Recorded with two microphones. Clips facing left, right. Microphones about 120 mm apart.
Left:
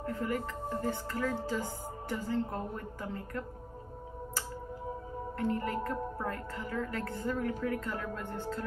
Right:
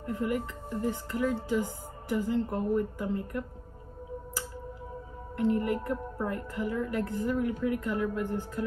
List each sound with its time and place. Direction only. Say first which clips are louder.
0.1 s a woman's voice: right 5 dB; 15° right (ahead or behind)
5.4 s a woman's voice: right 5 dB; 15° right (ahead or behind)